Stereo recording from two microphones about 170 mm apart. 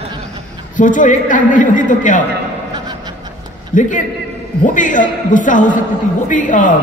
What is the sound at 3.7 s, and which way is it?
A man's voice, 50° left (ahead or behind).